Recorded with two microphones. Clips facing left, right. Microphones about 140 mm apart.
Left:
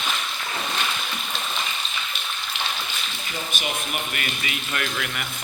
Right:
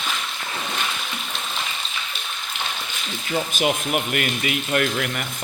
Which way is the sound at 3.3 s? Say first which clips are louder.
Right 9 dB; 75° right (ahead or behind).